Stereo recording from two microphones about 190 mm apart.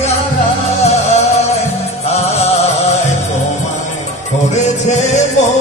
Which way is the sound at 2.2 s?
35° left (ahead or behind).